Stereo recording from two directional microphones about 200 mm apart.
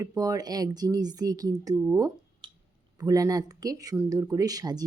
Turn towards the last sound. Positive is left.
turn(degrees=-20)  # may be behind; listen again after turning